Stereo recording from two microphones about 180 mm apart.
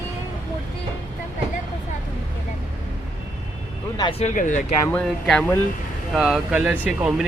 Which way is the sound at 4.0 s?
30° left (ahead or behind).